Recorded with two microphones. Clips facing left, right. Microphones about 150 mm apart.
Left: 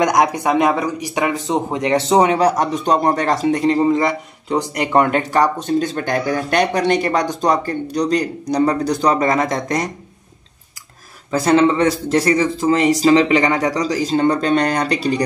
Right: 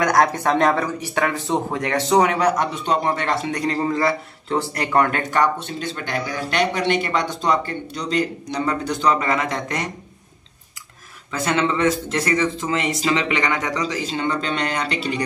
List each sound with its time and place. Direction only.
0.0 s speech: 15° left (ahead or behind); by 3.6 s 40° left (ahead or behind)
3.6 s a man's voice: 20° left (ahead or behind); by 9.8 s 40° left (ahead or behind)
11.3 s a man's voice: 35° left (ahead or behind)